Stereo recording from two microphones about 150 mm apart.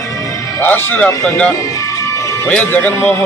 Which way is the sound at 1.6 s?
20° left (ahead or behind).